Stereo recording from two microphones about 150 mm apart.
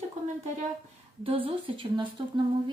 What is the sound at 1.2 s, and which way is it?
Speech, 40° right (ahead or behind).